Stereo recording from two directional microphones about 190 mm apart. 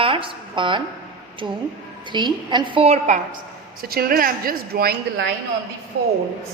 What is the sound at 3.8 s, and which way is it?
A woman's voice, 50° right (ahead or behind).